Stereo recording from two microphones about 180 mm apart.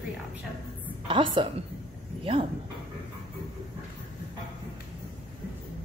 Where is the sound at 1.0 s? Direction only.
30° right (ahead or behind).